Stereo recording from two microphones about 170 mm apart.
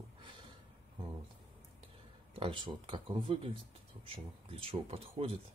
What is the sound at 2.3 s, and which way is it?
Speech, 30° right (ahead or behind).